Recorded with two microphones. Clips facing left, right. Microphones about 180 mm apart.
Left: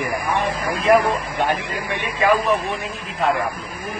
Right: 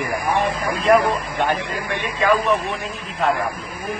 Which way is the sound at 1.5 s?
20° left (ahead or behind).